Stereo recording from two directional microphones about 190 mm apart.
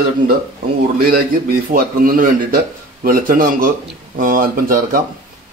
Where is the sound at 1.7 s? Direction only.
50° right (ahead or behind).